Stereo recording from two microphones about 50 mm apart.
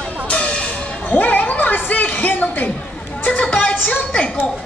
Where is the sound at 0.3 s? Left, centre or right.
Left.